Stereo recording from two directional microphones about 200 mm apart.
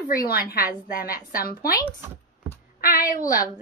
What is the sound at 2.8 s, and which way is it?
Speech, 45° left (ahead or behind).